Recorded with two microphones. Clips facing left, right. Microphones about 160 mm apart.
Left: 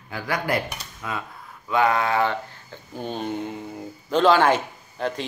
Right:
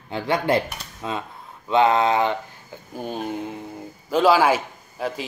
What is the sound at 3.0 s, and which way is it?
Speech, 5° right (ahead or behind).